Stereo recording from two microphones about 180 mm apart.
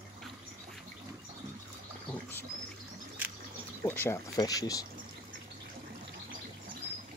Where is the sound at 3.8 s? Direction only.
15° left (ahead or behind).